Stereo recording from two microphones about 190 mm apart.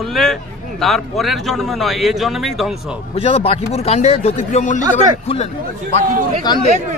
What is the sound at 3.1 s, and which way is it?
Speech, 30° left (ahead or behind).